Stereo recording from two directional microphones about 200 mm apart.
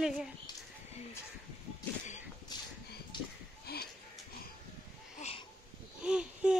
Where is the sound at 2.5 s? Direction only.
20° left (ahead or behind).